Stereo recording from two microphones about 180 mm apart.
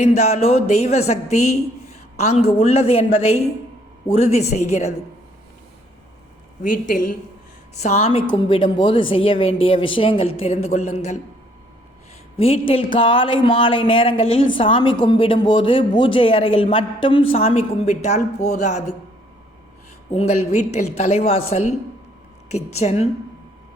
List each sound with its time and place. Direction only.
0.0 s a woman's voice: 40° left (ahead or behind)
6.6 s speech: 50° left (ahead or behind)
7.8 s a woman's voice: 40° left (ahead or behind)
12.4 s a woman's voice: 30° left (ahead or behind)
20.1 s a woman's voice: 35° left (ahead or behind)